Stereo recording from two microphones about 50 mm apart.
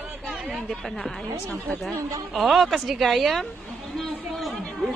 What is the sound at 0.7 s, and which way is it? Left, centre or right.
Speech, centre.